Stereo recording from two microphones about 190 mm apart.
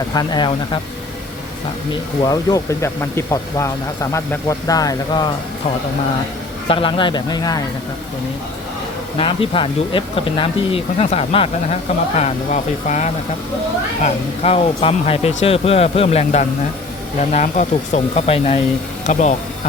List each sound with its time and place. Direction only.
0.1 s speech: 20° left (ahead or behind)
2.2 s speech: 20° left (ahead or behind)
6.7 s speech: 30° left (ahead or behind)
9.1 s speech: 30° left (ahead or behind)